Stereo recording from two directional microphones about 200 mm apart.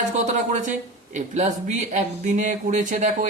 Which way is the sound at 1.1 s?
35° right (ahead or behind).